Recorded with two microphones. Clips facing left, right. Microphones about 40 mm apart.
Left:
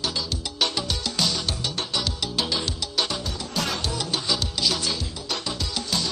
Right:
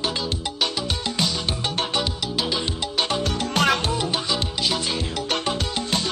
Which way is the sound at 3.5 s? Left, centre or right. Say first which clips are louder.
Right 7 dB; right.